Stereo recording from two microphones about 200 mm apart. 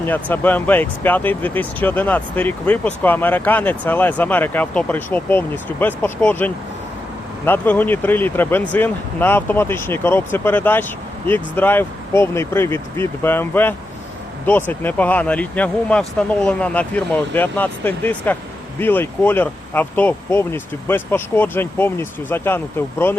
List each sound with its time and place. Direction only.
0.0 s speech: 10° left (ahead or behind)